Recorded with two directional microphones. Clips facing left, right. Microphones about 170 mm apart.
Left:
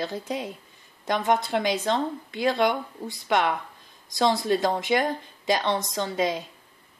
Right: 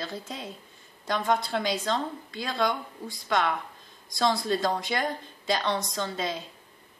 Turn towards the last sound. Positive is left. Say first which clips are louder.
# left 5 dB
turn(degrees=15)  # may be behind; listen again after turning